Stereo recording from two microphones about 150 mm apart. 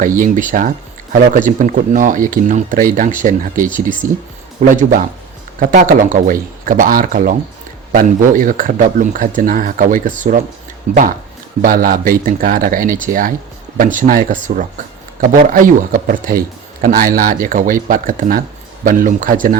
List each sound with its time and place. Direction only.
0.0 s speech: 60° right (ahead or behind)
4.0 s speech: 20° right (ahead or behind)
4.7 s speech: 60° right (ahead or behind)
11.6 s speech: 65° right (ahead or behind)